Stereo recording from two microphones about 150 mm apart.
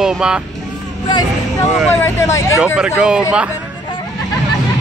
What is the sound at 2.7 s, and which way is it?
Speech, 5° right (ahead or behind).